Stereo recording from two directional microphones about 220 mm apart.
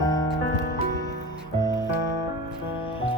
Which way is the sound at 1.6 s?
20° left (ahead or behind).